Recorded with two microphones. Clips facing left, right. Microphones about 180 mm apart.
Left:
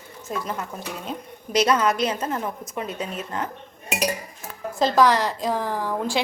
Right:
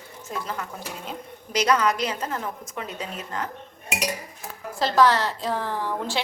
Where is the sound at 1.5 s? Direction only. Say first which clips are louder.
Left 2 dB; 25° left (ahead or behind).